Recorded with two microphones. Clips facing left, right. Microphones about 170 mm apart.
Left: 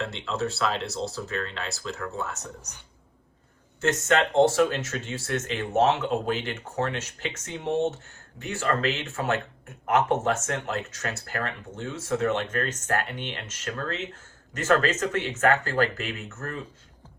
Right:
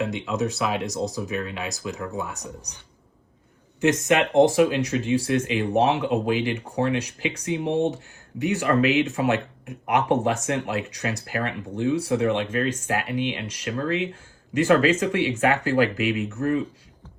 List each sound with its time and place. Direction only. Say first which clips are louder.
0.0 s speech: right 4 dB; 15° right (ahead or behind)
4.0 s speech: right 2 dB; 15° right (ahead or behind)